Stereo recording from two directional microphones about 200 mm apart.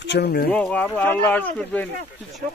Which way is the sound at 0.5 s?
5° left (ahead or behind).